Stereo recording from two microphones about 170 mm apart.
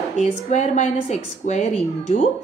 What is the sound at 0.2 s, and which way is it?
A woman's voice, 40° left (ahead or behind).